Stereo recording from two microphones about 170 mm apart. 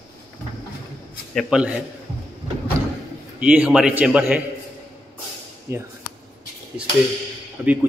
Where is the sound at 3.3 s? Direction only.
10° right (ahead or behind).